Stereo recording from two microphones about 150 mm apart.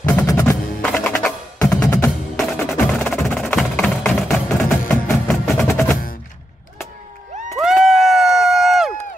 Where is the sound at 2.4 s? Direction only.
Centre (ahead or behind).